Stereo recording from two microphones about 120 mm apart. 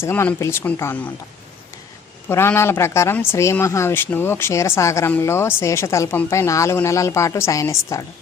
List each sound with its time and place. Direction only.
0.0 s speech: 20° left (ahead or behind)
2.3 s speech: 20° left (ahead or behind)